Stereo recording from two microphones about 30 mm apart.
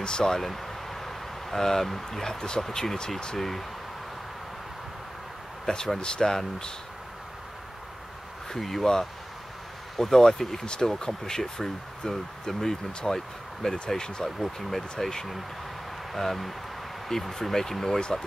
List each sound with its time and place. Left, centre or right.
0.0 s speech: left
0.4 s a sound: centre
2.7 s speech: centre
3.3 s speech: centre
5.9 s speech: left
8.5 s speech: centre
9.9 s speech: centre
10.6 s speech: left
14.2 s speech: centre